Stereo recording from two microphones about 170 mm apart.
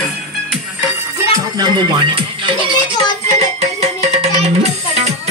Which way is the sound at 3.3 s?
40° right (ahead or behind).